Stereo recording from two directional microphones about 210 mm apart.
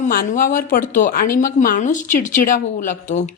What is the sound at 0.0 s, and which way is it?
A woman's voice, 40° left (ahead or behind).